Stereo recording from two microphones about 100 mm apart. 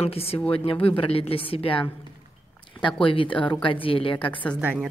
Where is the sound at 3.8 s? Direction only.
65° left (ahead or behind).